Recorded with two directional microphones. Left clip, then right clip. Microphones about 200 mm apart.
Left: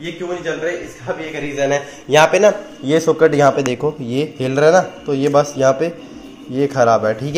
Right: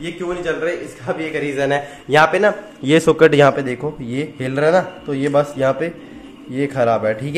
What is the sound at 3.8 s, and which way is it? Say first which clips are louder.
A man's voice: left 5 dB; 5° left (ahead or behind).